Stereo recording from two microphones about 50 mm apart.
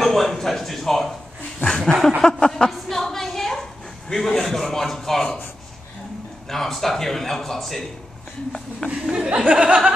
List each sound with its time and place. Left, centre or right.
0.0 s a sound: centre
2.2 s speech: centre
2.9 s a sound: centre
4.1 s a man's voice: centre
6.5 s a man's voice: centre
9.1 s speech: right